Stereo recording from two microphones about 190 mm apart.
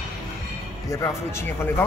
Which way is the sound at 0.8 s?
15° left (ahead or behind).